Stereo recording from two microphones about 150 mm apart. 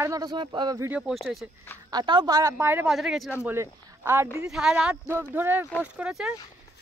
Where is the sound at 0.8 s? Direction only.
5° right (ahead or behind).